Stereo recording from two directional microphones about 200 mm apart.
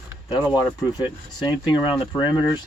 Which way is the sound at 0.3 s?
20° left (ahead or behind).